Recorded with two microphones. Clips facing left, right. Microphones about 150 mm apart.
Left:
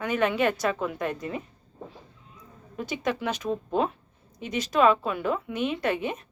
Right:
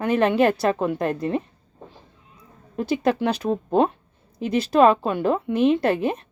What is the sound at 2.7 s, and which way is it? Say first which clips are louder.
A woman's voice: right 8 dB; 35° right (ahead or behind).